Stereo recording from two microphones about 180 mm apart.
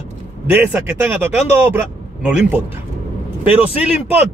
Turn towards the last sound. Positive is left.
turn(degrees=-10)  # may be behind; listen again after turning